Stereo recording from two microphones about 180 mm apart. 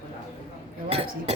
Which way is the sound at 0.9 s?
35° right (ahead or behind).